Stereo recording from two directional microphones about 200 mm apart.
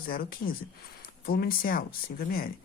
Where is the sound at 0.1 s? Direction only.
45° left (ahead or behind).